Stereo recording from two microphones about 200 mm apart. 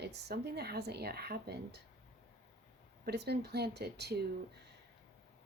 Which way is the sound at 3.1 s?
55° right (ahead or behind).